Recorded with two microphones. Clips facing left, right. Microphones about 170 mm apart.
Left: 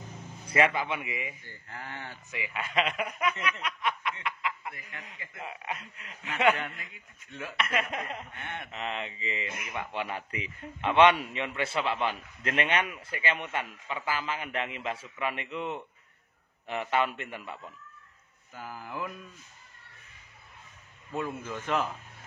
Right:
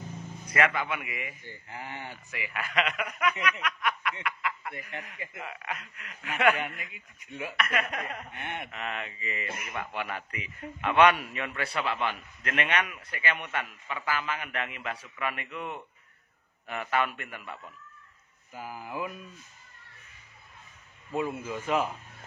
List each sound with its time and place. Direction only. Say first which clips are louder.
0.5 s a man's voice: left 1 dB; 30° left (ahead or behind)
1.4 s speech: right 2 dB; 15° right (ahead or behind)
2.3 s a man's voice: even; 20° left (ahead or behind)
3.6 s snicker: right 1 dB; 25° left (ahead or behind)
5.4 s a man's voice: left 2 dB; 25° left (ahead or behind)
6.8 s speech: right 3 dB; 15° right (ahead or behind)
7.5 s a man's voice: even; 20° left (ahead or behind)
8.3 s a sound: right 3 dB; 20° right (ahead or behind)
8.7 s a man's voice: left 1 dB; 25° left (ahead or behind)
18.5 s speech: right 2 dB; 10° right (ahead or behind)
21.1 s speech: right 3 dB; 10° right (ahead or behind)